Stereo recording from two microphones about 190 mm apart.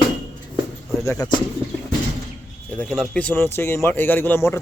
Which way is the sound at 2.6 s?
5° left (ahead or behind).